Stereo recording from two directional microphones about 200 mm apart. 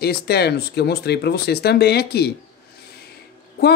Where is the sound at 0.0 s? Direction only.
55° left (ahead or behind).